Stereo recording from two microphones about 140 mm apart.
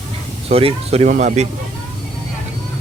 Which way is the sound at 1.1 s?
60° right (ahead or behind).